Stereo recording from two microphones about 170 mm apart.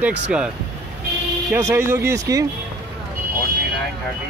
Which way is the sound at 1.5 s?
15° right (ahead or behind).